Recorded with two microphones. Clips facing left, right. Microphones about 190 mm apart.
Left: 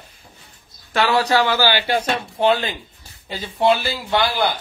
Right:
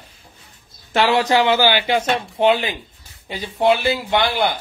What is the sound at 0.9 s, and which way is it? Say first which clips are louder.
A man's voice: right 1 dB; 20° right (ahead or behind).